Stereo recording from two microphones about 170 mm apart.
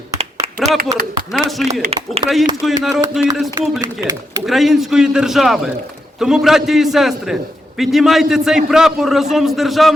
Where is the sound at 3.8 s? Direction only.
20° right (ahead or behind).